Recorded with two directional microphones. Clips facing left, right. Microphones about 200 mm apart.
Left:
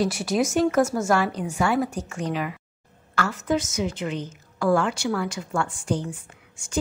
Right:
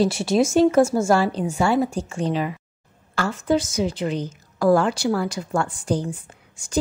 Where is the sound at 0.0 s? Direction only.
25° right (ahead or behind).